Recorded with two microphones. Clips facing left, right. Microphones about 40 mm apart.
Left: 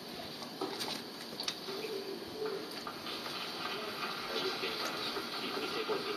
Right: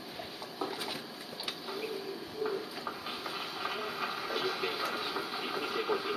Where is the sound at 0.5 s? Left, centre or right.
Centre.